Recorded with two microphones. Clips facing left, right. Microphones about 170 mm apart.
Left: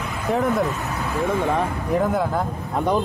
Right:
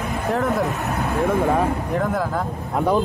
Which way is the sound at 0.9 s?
55° right (ahead or behind).